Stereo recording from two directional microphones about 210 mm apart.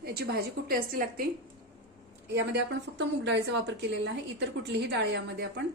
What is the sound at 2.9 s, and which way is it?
A woman's voice, 55° right (ahead or behind).